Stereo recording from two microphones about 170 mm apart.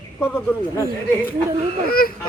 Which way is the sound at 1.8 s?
60° left (ahead or behind).